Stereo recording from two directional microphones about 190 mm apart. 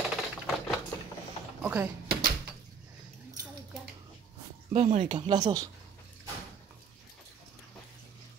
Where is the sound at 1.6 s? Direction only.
10° right (ahead or behind).